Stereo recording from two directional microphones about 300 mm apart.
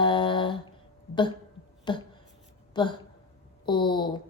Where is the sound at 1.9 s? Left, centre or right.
Centre.